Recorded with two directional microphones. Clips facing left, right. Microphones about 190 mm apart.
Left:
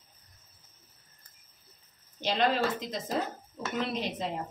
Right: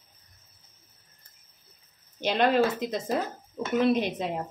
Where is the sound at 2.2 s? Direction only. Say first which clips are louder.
Right 5 dB; 55° right (ahead or behind).